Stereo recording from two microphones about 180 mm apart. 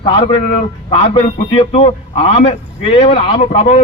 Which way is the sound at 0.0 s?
30° left (ahead or behind).